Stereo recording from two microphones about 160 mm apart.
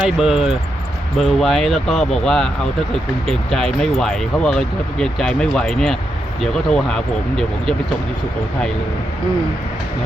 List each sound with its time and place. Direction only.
0.2 s speech: 5° right (ahead or behind)